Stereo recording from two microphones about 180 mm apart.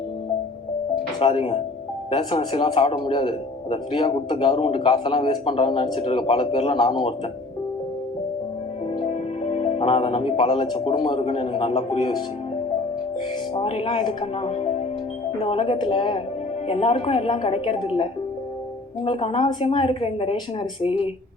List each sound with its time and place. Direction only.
1.2 s a woman's voice: 30° left (ahead or behind)
9.0 s speech: 35° left (ahead or behind)
13.5 s a woman's voice: 30° left (ahead or behind)